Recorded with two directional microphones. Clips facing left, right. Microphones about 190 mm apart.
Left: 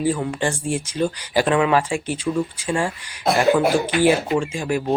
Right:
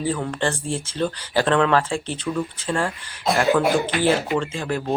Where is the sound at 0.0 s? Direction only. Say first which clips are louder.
Left 2 dB; 10° left (ahead or behind).